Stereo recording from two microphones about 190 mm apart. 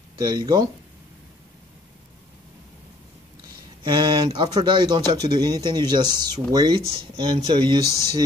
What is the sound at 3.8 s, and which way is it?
Speech, 25° right (ahead or behind).